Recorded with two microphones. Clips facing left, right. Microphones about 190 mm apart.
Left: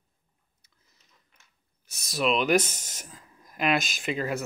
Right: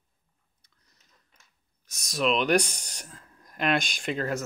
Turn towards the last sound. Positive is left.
turn(degrees=5)  # may be behind; listen again after turning